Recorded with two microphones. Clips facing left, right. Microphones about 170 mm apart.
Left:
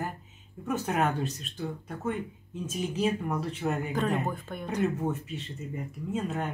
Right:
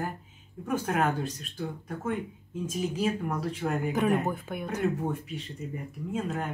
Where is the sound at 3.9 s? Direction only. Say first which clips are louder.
Right 3 dB; 10° right (ahead or behind).